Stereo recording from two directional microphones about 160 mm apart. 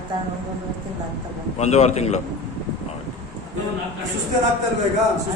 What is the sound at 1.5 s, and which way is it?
Speech, 40° left (ahead or behind).